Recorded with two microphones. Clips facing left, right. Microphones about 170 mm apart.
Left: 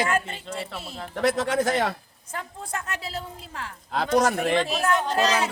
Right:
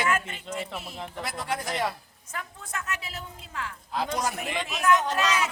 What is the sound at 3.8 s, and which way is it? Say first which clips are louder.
Speech: left 8 dB; 75° left (ahead or behind).